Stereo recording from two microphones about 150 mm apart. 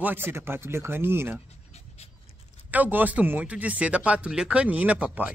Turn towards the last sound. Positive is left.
turn(degrees=-10)  # may be behind; listen again after turning